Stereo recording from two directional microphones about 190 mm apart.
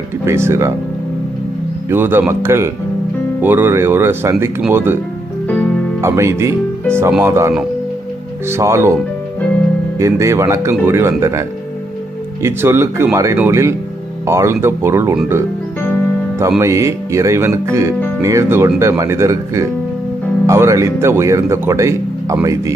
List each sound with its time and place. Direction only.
0.3 s speech: 15° right (ahead or behind)
1.9 s speech: 10° right (ahead or behind)
5.5 s music: 5° left (ahead or behind)
6.0 s speech: 15° right (ahead or behind)
10.0 s speech: 15° right (ahead or behind)
16.5 s speech: 15° right (ahead or behind)